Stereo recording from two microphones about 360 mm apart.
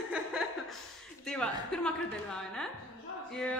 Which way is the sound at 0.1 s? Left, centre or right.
Centre.